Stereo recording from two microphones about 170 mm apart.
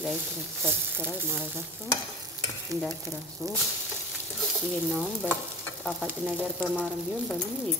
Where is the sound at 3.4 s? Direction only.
20° right (ahead or behind).